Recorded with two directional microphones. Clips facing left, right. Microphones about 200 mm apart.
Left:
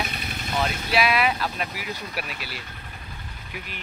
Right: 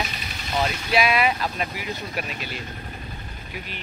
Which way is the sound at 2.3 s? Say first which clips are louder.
Right 3 dB; 45° right (ahead or behind).